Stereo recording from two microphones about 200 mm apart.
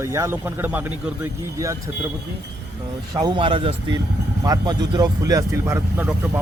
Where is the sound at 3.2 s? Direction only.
25° right (ahead or behind).